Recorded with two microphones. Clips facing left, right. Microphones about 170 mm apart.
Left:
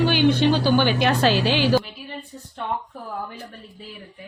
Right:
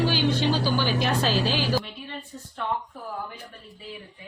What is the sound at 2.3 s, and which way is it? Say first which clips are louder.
Speech: left 1 dB; 20° left (ahead or behind).